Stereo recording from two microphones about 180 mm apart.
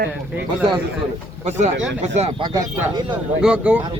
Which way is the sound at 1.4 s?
40° right (ahead or behind).